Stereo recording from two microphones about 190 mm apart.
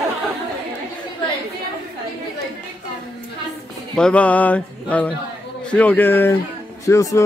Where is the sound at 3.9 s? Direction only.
5° left (ahead or behind).